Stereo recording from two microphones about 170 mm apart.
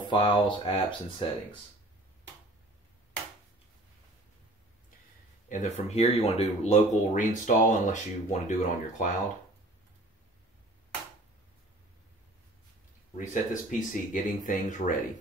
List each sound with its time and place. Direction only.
0.0 s speech: 30° left (ahead or behind)
5.5 s speech: 45° left (ahead or behind)
13.3 s speech: 50° left (ahead or behind)